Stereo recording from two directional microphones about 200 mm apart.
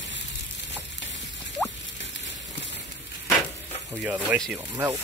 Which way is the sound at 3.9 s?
5° right (ahead or behind).